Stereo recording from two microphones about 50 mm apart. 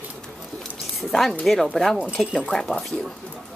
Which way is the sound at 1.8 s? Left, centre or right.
Centre.